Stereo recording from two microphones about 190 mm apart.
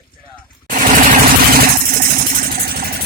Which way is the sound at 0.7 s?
45° right (ahead or behind).